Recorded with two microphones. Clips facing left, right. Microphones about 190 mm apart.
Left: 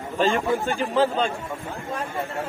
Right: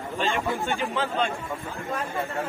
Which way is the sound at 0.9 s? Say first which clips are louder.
Left 9 dB; 35° left (ahead or behind).